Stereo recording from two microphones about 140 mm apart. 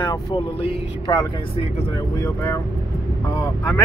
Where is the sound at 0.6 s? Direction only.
40° left (ahead or behind).